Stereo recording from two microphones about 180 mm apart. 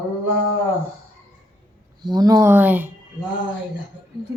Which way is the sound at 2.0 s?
20° right (ahead or behind).